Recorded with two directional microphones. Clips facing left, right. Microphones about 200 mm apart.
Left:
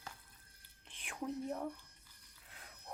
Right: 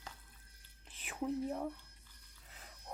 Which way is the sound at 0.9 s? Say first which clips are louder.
Right 4 dB; 5° right (ahead or behind).